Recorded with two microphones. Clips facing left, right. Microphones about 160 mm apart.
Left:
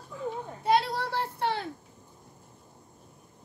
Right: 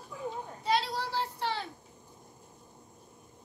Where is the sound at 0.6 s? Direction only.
55° left (ahead or behind).